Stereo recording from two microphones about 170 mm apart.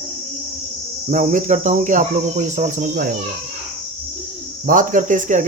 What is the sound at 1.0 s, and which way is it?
Speech, 45° right (ahead or behind).